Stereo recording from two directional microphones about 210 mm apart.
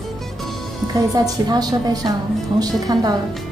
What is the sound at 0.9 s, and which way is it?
A woman's voice, 15° right (ahead or behind).